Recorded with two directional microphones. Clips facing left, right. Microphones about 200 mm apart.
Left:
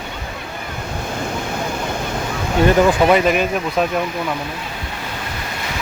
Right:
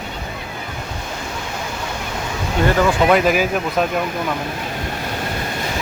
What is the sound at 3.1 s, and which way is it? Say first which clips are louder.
Speech: even; centre (ahead or behind).